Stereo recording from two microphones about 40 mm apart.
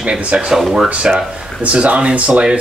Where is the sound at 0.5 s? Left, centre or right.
Centre.